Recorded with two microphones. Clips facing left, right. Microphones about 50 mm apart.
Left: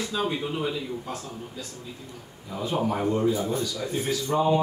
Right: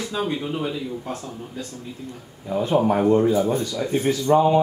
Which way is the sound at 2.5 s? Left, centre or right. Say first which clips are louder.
Right 7 dB; right.